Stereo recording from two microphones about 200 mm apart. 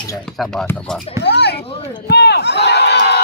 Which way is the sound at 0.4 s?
Centre (ahead or behind).